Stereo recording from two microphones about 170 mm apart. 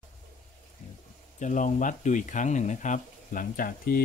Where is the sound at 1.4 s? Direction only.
45° left (ahead or behind).